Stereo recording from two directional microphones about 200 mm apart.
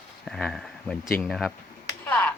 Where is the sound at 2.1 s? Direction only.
10° left (ahead or behind).